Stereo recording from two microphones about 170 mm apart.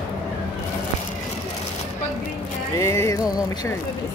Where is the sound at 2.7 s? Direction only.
15° left (ahead or behind).